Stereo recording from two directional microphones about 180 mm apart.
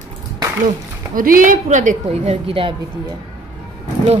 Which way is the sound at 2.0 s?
30° right (ahead or behind).